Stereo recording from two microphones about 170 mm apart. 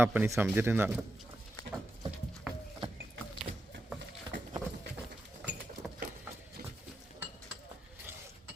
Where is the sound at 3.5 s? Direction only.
55° right (ahead or behind).